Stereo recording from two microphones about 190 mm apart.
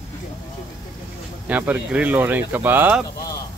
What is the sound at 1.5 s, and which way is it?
Speech, 10° right (ahead or behind).